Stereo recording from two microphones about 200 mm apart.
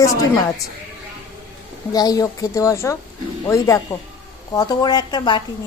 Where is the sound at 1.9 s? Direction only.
20° left (ahead or behind).